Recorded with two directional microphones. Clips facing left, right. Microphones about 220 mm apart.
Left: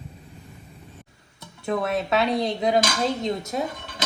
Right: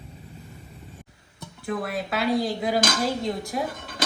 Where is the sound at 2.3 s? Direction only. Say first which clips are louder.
Left 1 dB; 20° left (ahead or behind).